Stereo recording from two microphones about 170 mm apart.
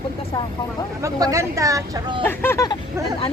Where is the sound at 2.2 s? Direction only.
15° left (ahead or behind).